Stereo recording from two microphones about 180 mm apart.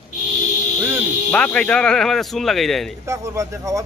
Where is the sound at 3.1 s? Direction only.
15° right (ahead or behind).